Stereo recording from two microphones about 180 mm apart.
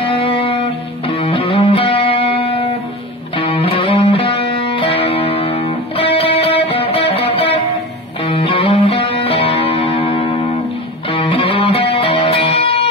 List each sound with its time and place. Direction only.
0.0 s music: 30° left (ahead or behind)